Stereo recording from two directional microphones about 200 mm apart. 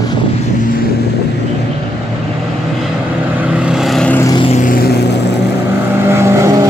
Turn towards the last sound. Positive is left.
turn(degrees=-15)  # may be behind; listen again after turning